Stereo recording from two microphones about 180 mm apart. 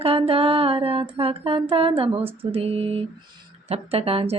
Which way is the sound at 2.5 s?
35° right (ahead or behind).